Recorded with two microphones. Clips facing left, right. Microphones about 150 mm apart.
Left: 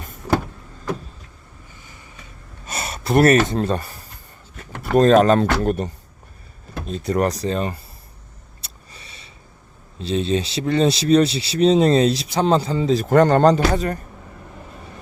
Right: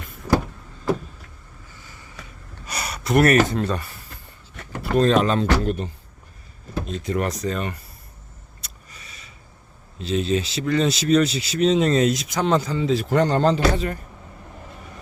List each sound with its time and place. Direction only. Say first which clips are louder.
1.7 s vehicle: right 1 dB; 20° left (ahead or behind)
2.6 s a sound: left 2 dB; 25° left (ahead or behind)
4.9 s speech: left 5 dB; 45° left (ahead or behind)
8.6 s vehicle: left 2 dB; 30° left (ahead or behind)
10.0 s speech: left 1 dB; 35° left (ahead or behind)